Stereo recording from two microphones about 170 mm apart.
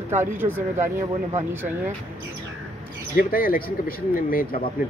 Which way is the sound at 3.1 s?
60° left (ahead or behind).